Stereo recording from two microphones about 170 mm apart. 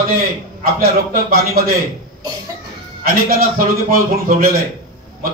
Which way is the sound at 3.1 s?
60° right (ahead or behind).